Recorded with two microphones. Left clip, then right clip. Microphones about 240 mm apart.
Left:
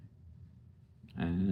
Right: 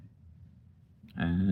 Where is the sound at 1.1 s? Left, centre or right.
Right.